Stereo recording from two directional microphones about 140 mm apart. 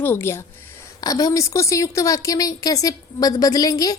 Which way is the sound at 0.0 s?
15° left (ahead or behind).